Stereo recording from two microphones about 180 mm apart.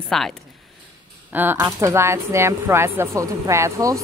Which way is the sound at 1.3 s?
10° right (ahead or behind).